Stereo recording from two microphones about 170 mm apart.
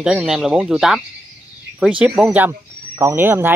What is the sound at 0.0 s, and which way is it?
Speech, 5° right (ahead or behind).